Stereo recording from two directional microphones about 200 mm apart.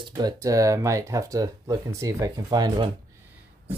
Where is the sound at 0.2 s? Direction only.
20° right (ahead or behind).